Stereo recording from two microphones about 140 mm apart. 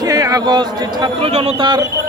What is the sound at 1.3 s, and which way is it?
Speech, 45° right (ahead or behind).